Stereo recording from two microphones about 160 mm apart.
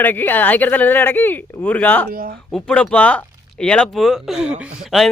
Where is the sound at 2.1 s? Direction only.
65° right (ahead or behind).